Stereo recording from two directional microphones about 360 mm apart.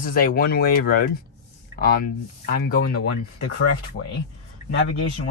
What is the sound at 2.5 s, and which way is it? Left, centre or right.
Speech, left.